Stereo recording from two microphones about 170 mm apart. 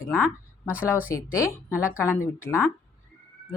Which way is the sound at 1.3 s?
15° left (ahead or behind).